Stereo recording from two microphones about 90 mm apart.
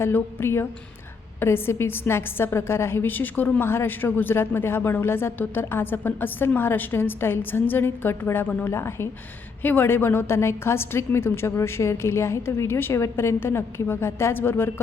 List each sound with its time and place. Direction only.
0.0 s a woman's voice: 25° left (ahead or behind)